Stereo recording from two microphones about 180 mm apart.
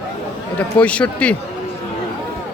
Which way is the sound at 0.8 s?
5° left (ahead or behind).